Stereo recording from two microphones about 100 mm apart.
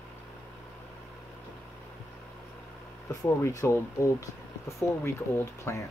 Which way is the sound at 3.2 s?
30° left (ahead or behind).